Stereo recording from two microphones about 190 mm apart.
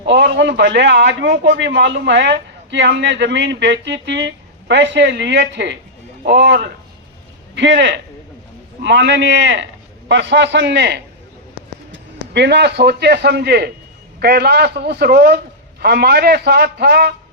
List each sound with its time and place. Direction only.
0.1 s a man's voice: 65° right (ahead or behind)